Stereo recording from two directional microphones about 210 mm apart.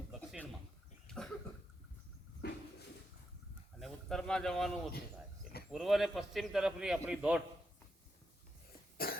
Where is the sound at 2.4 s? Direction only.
50° left (ahead or behind).